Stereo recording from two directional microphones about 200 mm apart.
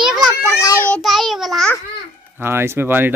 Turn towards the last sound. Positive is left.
turn(degrees=-10)  # may be behind; listen again after turning